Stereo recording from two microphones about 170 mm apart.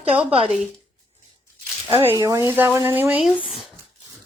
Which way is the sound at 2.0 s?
15° right (ahead or behind).